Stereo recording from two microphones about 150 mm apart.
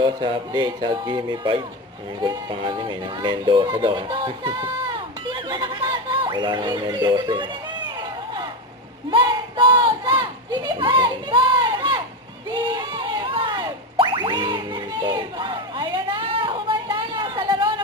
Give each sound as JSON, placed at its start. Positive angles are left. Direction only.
{"t": 0.0, "sound": "speech", "side_deg": -30}
{"t": 9.0, "sound": "a sound", "side_deg": -30}
{"t": 12.6, "sound": "music", "side_deg": -30}